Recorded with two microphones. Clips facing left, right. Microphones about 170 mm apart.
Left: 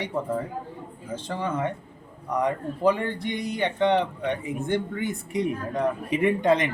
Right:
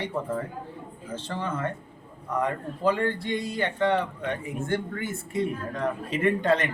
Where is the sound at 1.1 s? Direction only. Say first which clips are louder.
Left 3 dB; 10° left (ahead or behind).